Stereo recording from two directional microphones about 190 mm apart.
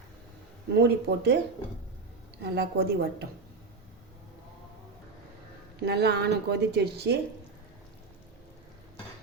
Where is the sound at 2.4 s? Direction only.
60° right (ahead or behind).